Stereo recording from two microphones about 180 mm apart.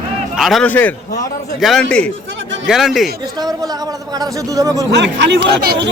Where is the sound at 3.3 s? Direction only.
20° right (ahead or behind).